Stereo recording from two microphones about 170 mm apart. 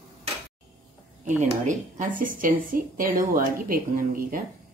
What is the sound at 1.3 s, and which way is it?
Speech, 45° right (ahead or behind).